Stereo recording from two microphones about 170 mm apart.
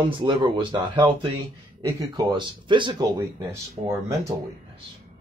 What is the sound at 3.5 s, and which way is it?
Speech, 15° right (ahead or behind).